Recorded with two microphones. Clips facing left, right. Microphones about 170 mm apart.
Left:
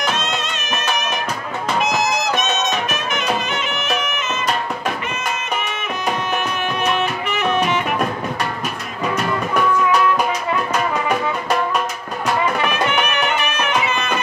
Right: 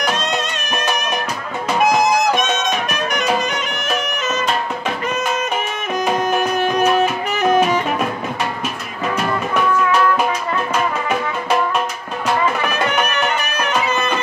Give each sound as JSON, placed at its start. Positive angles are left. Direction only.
{"t": 1.9, "sound": "music", "side_deg": -55}
{"t": 6.1, "sound": "music", "side_deg": -40}
{"t": 12.9, "sound": "music", "side_deg": -40}